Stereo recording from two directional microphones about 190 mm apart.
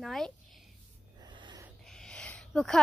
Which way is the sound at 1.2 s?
25° right (ahead or behind).